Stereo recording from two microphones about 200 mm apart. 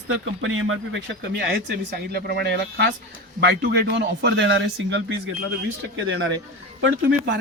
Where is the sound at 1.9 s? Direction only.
50° right (ahead or behind).